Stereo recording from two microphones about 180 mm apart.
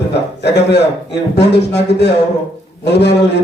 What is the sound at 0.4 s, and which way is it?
A man's voice, 70° left (ahead or behind).